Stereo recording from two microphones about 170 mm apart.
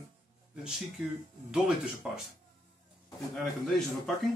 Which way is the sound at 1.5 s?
5° right (ahead or behind).